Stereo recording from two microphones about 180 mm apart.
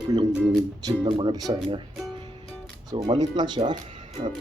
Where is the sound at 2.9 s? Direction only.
20° right (ahead or behind).